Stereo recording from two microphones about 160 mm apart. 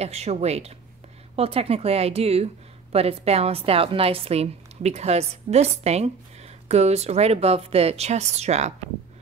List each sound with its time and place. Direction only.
0.0 s speech: 40° right (ahead or behind)